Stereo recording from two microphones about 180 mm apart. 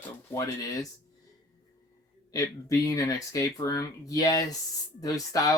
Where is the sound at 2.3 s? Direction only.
20° left (ahead or behind).